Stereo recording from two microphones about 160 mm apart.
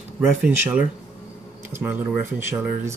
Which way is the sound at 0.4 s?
10° right (ahead or behind).